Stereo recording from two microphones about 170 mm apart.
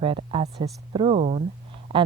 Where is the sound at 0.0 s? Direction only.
35° right (ahead or behind).